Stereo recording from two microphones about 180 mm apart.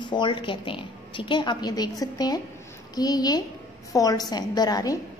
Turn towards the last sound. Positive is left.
turn(degrees=20)  # may be behind; listen again after turning